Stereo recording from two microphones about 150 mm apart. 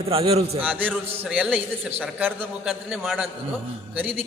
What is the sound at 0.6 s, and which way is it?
A man's voice, 10° right (ahead or behind).